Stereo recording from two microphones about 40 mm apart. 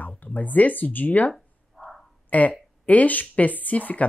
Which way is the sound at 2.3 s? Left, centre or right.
Left.